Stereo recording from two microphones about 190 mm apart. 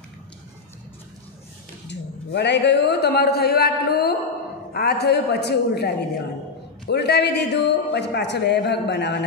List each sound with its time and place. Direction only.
1.9 s a man's voice: 65° left (ahead or behind)